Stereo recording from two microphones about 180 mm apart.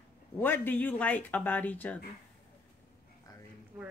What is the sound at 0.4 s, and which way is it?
Speech, 10° left (ahead or behind).